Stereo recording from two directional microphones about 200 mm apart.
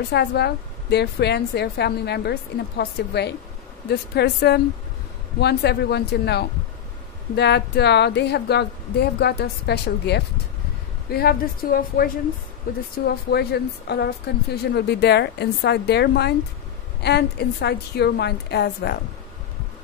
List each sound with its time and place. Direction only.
0.1 s a woman's voice: 55° left (ahead or behind)